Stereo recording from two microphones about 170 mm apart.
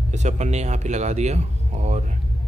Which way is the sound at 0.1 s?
45° right (ahead or behind).